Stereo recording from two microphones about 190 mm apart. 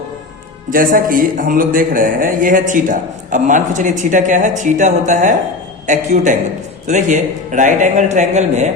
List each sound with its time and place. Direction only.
0.7 s a man's voice: 45° right (ahead or behind)